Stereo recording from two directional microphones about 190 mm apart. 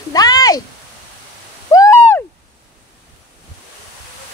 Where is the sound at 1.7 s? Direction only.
15° left (ahead or behind).